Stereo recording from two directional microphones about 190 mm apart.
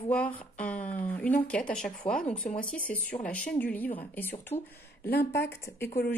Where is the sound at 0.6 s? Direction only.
10° left (ahead or behind).